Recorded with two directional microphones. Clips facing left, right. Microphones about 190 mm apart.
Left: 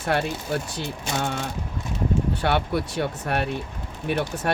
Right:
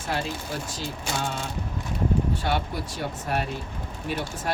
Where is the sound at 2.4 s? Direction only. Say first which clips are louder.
Left 4 dB; 65° left (ahead or behind).